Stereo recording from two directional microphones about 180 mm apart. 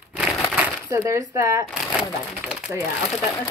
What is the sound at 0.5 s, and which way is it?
Speech, 15° right (ahead or behind).